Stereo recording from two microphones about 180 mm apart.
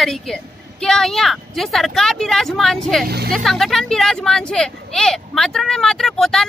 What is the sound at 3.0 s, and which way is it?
Speech, 60° right (ahead or behind).